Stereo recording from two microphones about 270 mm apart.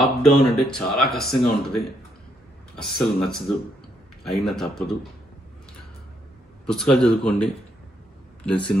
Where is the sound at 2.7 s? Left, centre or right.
Centre.